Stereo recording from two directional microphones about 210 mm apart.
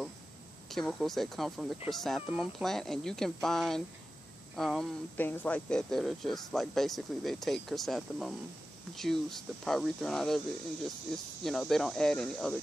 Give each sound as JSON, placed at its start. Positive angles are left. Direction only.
{"t": 0.7, "sound": "speech", "side_deg": 0}